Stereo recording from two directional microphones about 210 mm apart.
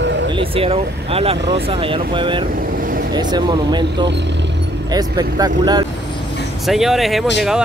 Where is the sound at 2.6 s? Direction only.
40° right (ahead or behind).